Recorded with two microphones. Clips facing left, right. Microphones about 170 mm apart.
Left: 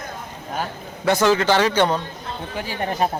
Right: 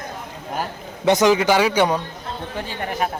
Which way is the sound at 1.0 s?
15° right (ahead or behind).